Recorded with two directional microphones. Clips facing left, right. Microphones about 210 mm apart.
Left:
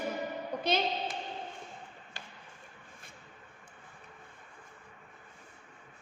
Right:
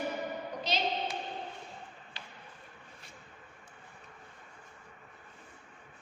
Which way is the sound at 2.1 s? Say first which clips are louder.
Left 1 dB; 45° left (ahead or behind).